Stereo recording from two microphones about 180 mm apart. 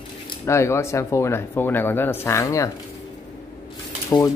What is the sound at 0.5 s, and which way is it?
Speech, 15° left (ahead or behind).